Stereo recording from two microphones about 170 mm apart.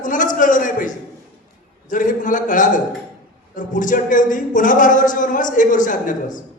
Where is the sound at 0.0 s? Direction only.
50° left (ahead or behind).